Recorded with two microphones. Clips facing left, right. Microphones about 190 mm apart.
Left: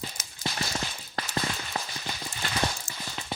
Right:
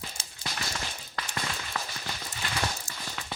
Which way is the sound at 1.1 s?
35° left (ahead or behind).